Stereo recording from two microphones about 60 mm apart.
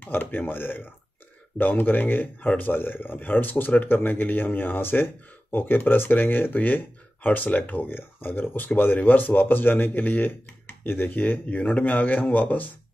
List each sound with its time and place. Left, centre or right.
0.0 s speech: left